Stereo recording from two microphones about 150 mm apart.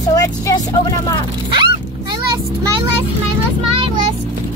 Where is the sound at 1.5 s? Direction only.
30° right (ahead or behind).